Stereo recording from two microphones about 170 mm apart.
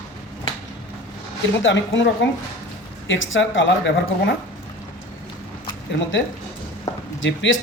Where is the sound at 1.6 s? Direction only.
90° left.